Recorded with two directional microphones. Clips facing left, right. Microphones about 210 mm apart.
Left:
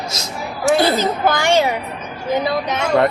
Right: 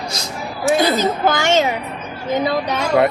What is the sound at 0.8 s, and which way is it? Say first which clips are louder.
Speech: even; 15° right (ahead or behind).